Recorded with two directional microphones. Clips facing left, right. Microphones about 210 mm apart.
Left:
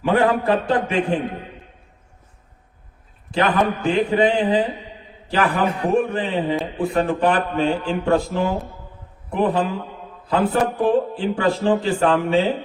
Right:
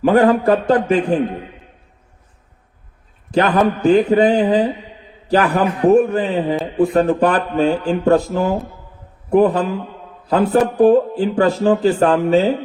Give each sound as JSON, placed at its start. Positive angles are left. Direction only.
{"t": 0.0, "sound": "speech", "side_deg": -45}
{"t": 3.3, "sound": "a man's voice", "side_deg": -45}